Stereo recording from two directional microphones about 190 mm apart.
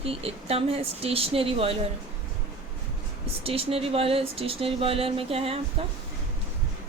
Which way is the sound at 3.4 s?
30° right (ahead or behind).